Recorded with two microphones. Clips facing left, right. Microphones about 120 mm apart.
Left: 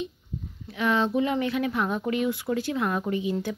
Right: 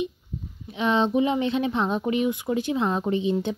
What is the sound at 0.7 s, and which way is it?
Speech, 20° right (ahead or behind).